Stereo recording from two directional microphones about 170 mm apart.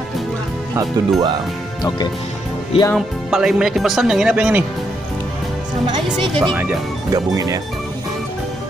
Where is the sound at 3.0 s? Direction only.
Centre (ahead or behind).